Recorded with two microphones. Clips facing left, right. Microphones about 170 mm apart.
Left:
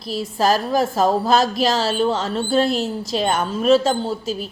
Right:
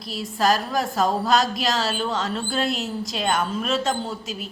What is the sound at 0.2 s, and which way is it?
A woman's voice, 30° left (ahead or behind).